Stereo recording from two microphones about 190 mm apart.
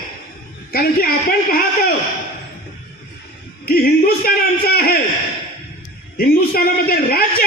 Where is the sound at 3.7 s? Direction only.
50° left (ahead or behind).